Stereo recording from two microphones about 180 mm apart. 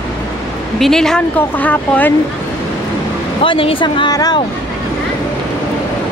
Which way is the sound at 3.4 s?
30° left (ahead or behind).